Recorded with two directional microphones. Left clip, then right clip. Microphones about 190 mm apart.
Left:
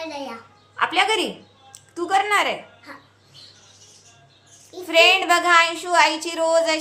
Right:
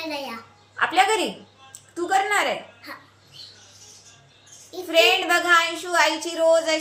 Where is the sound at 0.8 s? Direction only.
10° left (ahead or behind).